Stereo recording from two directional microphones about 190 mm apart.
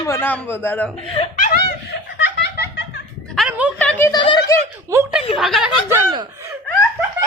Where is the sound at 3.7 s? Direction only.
5° left (ahead or behind).